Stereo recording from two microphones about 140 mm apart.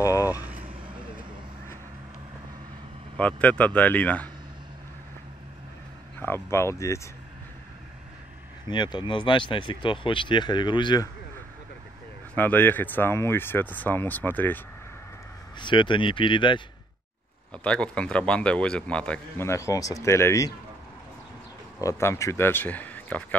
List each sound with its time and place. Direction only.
0.0 s vehicle: 25° left (ahead or behind)
0.4 s vehicle: 10° right (ahead or behind)
3.2 s speech: 10° left (ahead or behind)
6.1 s speech: 15° left (ahead or behind)
8.6 s speech: 35° left (ahead or behind)
12.4 s speech: 15° left (ahead or behind)
15.6 s speech: 35° left (ahead or behind)
17.5 s speech: 5° left (ahead or behind)
19.4 s speech: 20° left (ahead or behind)
21.8 s speech: 20° left (ahead or behind)